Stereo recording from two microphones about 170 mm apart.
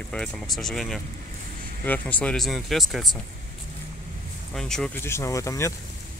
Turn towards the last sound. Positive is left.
turn(degrees=20)  # may be behind; listen again after turning